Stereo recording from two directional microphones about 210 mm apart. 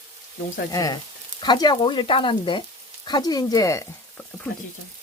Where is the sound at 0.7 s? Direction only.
15° left (ahead or behind).